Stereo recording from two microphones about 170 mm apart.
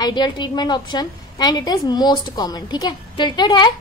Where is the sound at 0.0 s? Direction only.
25° left (ahead or behind).